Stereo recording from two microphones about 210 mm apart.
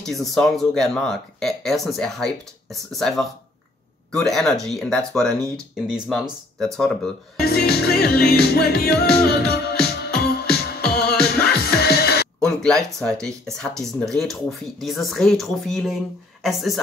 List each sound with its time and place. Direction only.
0.0 s speech: centre (ahead or behind)
7.4 s music: 50° left (ahead or behind)
12.4 s speech: 5° left (ahead or behind)